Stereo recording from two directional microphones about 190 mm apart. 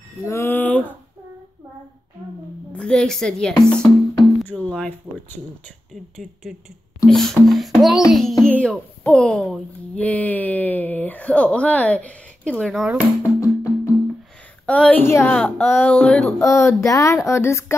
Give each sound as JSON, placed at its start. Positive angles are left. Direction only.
{"t": 0.2, "sound": "speech", "side_deg": 15}
{"t": 2.7, "sound": "speech", "side_deg": 5}
{"t": 7.1, "sound": "a child's voice", "side_deg": 0}
{"t": 13.2, "sound": "music", "side_deg": 15}
{"t": 14.7, "sound": "a woman's voice", "side_deg": 5}
{"t": 16.3, "sound": "a woman's voice", "side_deg": 15}